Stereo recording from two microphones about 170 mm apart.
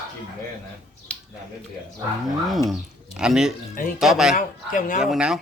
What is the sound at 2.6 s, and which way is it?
Speech, 5° right (ahead or behind).